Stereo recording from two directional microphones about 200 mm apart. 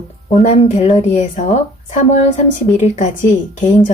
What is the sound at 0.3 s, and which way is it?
Speech, 35° left (ahead or behind).